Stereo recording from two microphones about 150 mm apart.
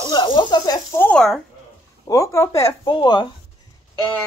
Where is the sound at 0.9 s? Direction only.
10° left (ahead or behind).